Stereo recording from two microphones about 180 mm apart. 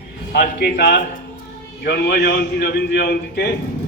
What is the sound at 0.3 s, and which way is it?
A man's voice, 65° left (ahead or behind).